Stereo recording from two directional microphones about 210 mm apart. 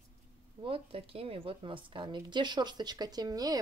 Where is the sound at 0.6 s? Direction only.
25° right (ahead or behind).